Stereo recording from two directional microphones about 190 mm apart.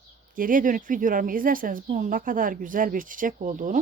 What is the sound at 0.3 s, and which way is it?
A woman's voice, 45° right (ahead or behind).